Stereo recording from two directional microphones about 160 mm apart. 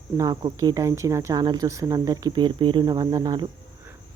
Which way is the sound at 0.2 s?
25° right (ahead or behind).